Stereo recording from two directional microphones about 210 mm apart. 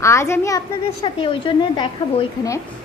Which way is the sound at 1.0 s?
25° left (ahead or behind).